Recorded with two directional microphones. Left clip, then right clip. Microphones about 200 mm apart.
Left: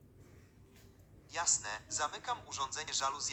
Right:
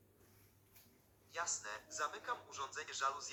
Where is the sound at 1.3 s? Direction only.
50° left (ahead or behind).